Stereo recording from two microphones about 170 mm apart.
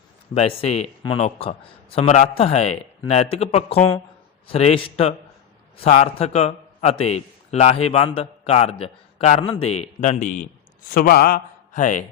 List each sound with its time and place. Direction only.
0.3 s a man's voice: 35° left (ahead or behind)
10.8 s a man's voice: 55° left (ahead or behind)